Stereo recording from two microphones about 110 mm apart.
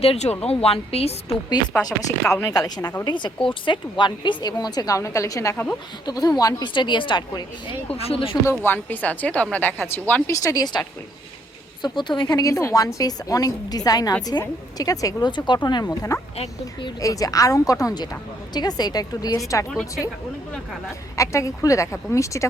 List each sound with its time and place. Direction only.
0.0 s a woman's voice: 70° left (ahead or behind)
1.7 s speech: 20° left (ahead or behind)
2.6 s a woman's voice: 35° left (ahead or behind)
6.7 s a woman's voice: 45° left (ahead or behind)
7.9 s a woman's voice: 60° left (ahead or behind)
8.4 s speech: 20° left (ahead or behind)
10.4 s a woman's voice: 35° left (ahead or behind)
11.8 s a woman's voice: 45° left (ahead or behind)
21.2 s speech: 30° left (ahead or behind)